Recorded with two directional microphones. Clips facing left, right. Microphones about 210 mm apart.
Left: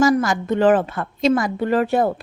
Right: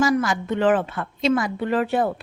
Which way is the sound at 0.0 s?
45° left (ahead or behind).